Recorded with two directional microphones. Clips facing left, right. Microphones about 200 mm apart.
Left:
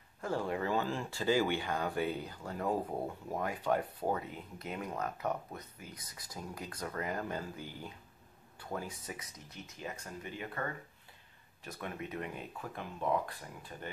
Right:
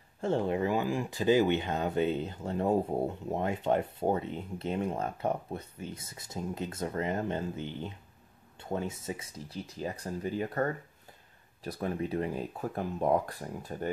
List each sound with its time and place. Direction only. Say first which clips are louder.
0.2 s speech: right 6 dB; 25° right (ahead or behind); by 13.8 s 40° right (ahead or behind)